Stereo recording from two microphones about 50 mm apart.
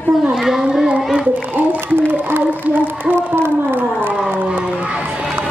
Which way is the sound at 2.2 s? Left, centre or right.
Right.